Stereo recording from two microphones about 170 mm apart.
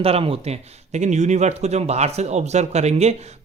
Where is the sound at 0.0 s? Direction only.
35° right (ahead or behind).